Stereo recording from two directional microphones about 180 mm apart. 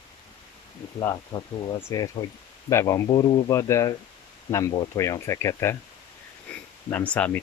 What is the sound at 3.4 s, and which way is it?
Speech, 15° left (ahead or behind).